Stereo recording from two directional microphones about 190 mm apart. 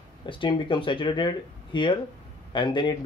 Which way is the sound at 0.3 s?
25° left (ahead or behind).